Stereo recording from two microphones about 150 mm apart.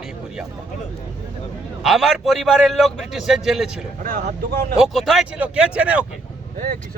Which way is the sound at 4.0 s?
75° right (ahead or behind).